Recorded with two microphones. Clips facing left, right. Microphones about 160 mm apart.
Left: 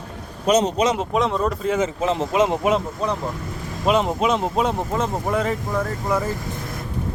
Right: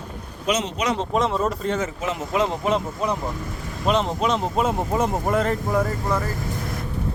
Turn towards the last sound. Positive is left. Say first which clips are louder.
# left 2 dB
turn(degrees=10)  # may be behind; listen again after turning